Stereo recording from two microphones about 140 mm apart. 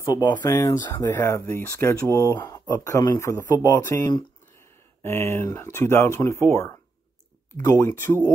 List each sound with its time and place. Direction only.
0.0 s speech: 25° left (ahead or behind)